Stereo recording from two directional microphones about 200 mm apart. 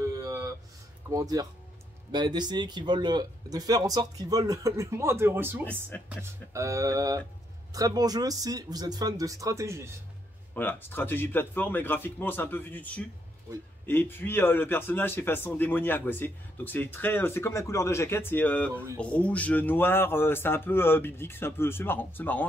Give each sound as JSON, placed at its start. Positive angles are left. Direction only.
{"t": 0.0, "sound": "a sound", "side_deg": -15}
{"t": 1.1, "sound": "speech", "side_deg": -20}
{"t": 5.7, "sound": "a man's voice", "side_deg": 10}
{"t": 6.0, "sound": "speech", "side_deg": -15}
{"t": 10.5, "sound": "a man's voice", "side_deg": 10}